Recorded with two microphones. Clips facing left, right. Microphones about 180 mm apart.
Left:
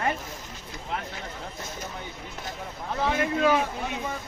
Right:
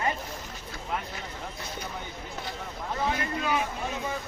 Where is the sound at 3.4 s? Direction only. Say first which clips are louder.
Left 7 dB; 65° left (ahead or behind).